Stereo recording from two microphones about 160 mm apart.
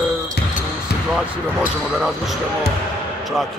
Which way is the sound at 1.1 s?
Centre (ahead or behind).